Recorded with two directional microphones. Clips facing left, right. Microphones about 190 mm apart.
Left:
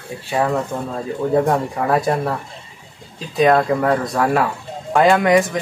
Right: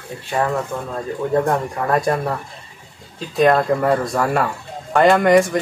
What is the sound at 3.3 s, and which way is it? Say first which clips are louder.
Speech: even; centre (ahead or behind).